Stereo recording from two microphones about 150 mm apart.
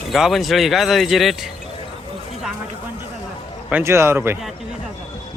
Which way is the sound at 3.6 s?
15° right (ahead or behind).